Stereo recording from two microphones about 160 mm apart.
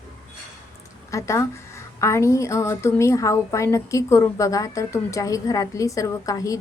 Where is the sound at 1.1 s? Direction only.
20° left (ahead or behind).